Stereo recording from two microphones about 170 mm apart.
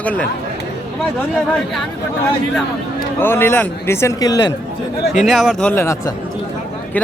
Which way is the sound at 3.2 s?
15° left (ahead or behind).